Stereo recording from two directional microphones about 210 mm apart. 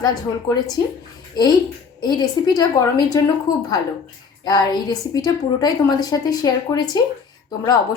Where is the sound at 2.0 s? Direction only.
20° left (ahead or behind).